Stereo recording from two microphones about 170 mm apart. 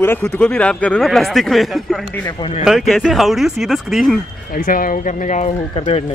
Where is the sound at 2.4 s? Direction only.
35° left (ahead or behind).